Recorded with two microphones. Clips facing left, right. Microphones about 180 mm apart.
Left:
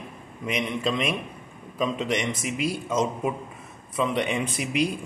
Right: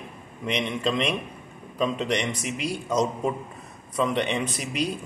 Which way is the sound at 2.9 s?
5° left (ahead or behind).